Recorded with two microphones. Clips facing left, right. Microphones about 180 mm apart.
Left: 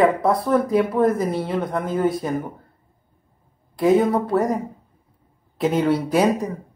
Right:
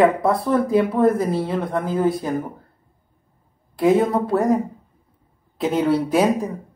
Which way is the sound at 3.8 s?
Centre (ahead or behind).